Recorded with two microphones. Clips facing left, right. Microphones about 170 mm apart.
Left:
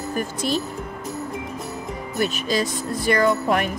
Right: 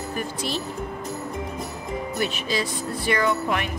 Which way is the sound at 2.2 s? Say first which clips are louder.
Left 5 dB; 45° left (ahead or behind).